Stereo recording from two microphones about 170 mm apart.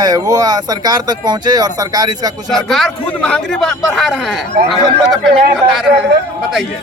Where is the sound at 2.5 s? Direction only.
Centre (ahead or behind).